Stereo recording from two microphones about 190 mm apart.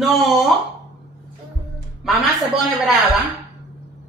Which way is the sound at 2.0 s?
Centre (ahead or behind).